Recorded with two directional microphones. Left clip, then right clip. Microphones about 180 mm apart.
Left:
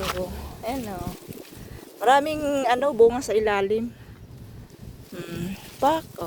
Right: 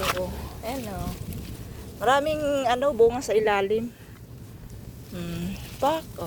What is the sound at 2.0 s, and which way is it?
Speech, 30° left (ahead or behind).